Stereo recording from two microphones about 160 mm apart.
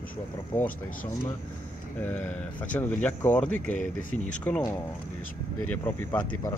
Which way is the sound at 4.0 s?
60° left (ahead or behind).